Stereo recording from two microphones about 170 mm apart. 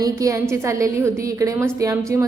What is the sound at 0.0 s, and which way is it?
A woman's voice, 20° right (ahead or behind).